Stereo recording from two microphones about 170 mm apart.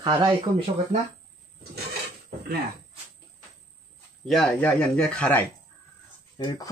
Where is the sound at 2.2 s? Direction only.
65° right (ahead or behind).